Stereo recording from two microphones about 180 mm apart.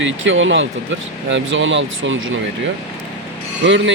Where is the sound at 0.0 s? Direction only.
90° right.